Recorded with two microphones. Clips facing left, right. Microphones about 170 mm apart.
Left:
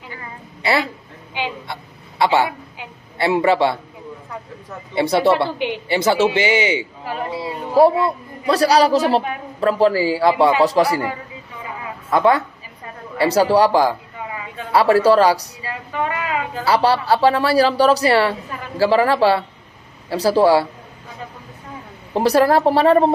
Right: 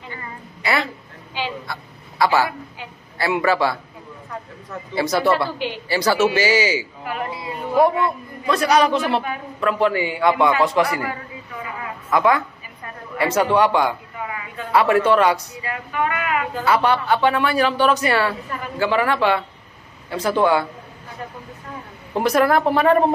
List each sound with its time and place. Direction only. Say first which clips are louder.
0.6 s a woman's voice: left 3 dB; 30° left (ahead or behind)
1.3 s a sound: left 1 dB; 20° left (ahead or behind)
3.2 s speech: left 3 dB; 25° left (ahead or behind)
4.9 s speech: left 3 dB; 30° left (ahead or behind)
12.1 s speech: left 2 dB; 30° left (ahead or behind)
22.1 s speech: left 3 dB; 35° left (ahead or behind)